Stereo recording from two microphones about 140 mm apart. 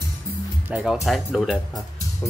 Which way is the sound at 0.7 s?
5° right (ahead or behind).